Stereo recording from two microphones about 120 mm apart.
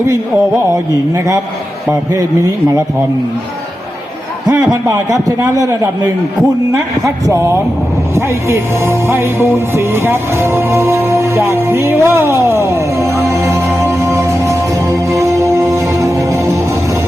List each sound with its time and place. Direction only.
4.4 s a man's voice: 30° right (ahead or behind)
8.1 s speech: 20° right (ahead or behind)
15.1 s music: 25° right (ahead or behind)